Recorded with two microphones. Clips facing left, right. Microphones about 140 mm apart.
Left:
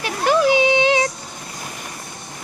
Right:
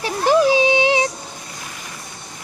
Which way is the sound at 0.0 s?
30° right (ahead or behind).